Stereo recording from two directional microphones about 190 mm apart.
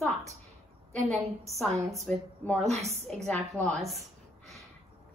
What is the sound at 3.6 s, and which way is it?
Speech, 15° right (ahead or behind).